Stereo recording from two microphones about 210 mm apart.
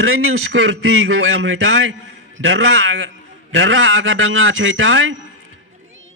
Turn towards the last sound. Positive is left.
turn(degrees=-70)  # may be behind; listen again after turning